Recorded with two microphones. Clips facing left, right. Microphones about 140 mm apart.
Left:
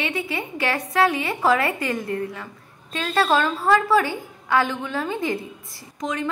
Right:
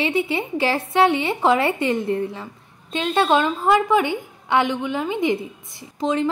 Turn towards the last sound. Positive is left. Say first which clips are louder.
# right 6 dB
turn(degrees=-30)  # may be behind; listen again after turning